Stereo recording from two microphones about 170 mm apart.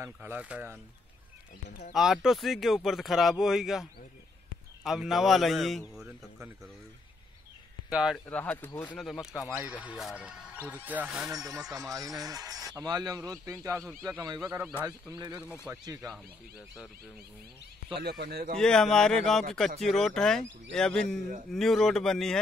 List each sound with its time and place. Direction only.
0.0 s speech: 10° right (ahead or behind)
2.0 s speech: centre (ahead or behind)
4.8 s speech: 5° right (ahead or behind)
7.9 s speech: 5° right (ahead or behind)
8.3 s speech: 10° left (ahead or behind)
8.9 s speech: centre (ahead or behind)
11.3 s speech: 20° right (ahead or behind)
14.9 s speech: 20° right (ahead or behind)
18.0 s a man's voice: 70° right (ahead or behind)
18.6 s speech: 5° left (ahead or behind)